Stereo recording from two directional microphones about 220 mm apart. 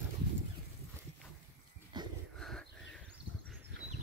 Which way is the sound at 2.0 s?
20° right (ahead or behind).